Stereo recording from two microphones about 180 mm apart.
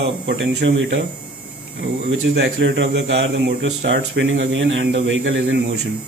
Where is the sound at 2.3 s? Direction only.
80° right.